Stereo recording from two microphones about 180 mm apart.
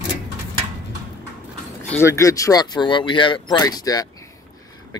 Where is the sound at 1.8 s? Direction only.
15° left (ahead or behind).